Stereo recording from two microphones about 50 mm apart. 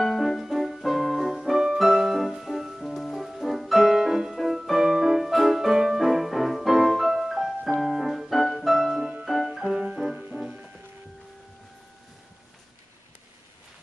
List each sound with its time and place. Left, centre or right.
0.0 s piano: centre
4.4 s music: centre
7.8 s keyboard: centre
9.2 s music: centre
9.7 s music: centre